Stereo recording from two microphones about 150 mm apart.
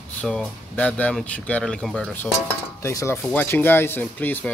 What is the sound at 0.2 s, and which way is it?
Speech, 5° left (ahead or behind).